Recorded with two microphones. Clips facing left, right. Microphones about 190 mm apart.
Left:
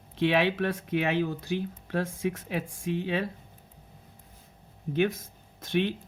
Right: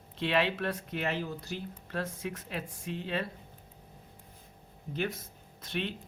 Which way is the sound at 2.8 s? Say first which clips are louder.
Left 9 dB; 65° left (ahead or behind).